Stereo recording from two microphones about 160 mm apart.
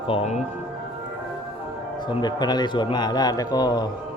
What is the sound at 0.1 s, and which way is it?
Speech, 40° left (ahead or behind).